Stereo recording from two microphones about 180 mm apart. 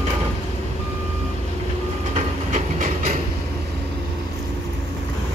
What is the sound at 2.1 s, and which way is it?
Train, 40° right (ahead or behind).